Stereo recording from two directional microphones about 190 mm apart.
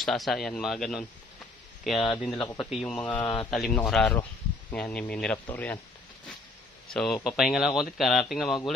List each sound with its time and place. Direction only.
0.0 s speech: centre (ahead or behind)
2.3 s speech: 25° left (ahead or behind)
2.6 s speech: 5° left (ahead or behind)
6.9 s speech: 5° left (ahead or behind)